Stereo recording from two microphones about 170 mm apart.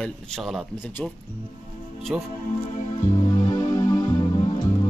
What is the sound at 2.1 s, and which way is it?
Speech, 5° right (ahead or behind).